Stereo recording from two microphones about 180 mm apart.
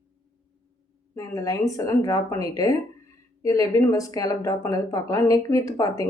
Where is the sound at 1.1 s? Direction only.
20° left (ahead or behind).